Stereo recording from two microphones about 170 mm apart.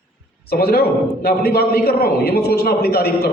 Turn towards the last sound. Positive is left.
turn(degrees=65)  # may be behind; listen again after turning